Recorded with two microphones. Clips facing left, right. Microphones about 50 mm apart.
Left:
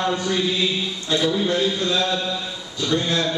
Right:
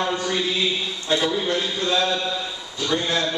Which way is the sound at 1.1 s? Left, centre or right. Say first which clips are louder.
Left 1 dB; right.